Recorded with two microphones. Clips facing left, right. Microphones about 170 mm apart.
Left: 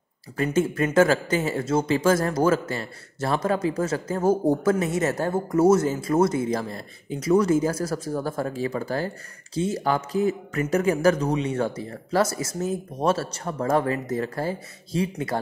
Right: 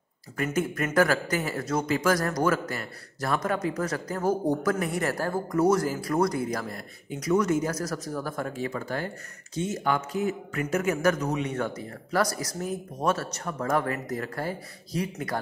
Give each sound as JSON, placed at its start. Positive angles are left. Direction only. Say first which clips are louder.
{"t": 0.4, "sound": "speech", "louder": "left 5 dB", "side_deg": 25}